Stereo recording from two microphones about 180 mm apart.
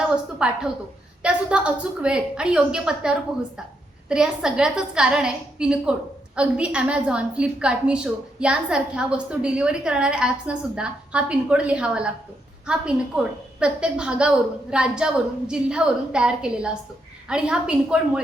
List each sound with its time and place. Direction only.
0.3 s a woman's voice: 5° right (ahead or behind)
13.1 s a woman's voice: 5° right (ahead or behind)